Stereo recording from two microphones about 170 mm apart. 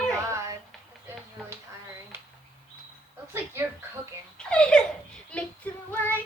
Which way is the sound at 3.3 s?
15° right (ahead or behind).